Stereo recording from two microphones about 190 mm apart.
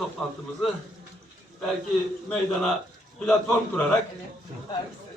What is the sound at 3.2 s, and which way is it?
Speech, 5° left (ahead or behind).